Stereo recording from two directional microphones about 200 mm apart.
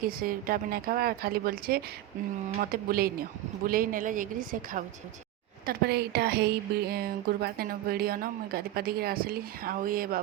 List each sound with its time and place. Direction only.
0.0 s speech: 45° right (ahead or behind)
5.6 s speech: 50° right (ahead or behind)